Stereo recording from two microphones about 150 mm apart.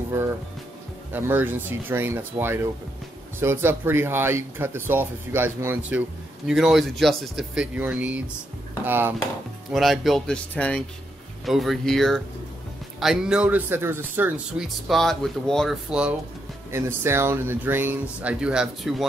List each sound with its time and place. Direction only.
1.1 s speech: 10° right (ahead or behind)
9.7 s speech: centre (ahead or behind)
16.7 s speech: 15° right (ahead or behind)